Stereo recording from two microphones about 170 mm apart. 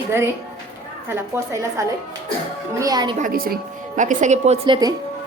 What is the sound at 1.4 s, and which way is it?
A woman's voice, 15° right (ahead or behind).